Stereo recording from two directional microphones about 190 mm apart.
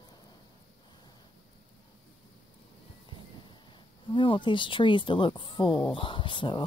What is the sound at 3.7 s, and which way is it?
Speech, 25° left (ahead or behind).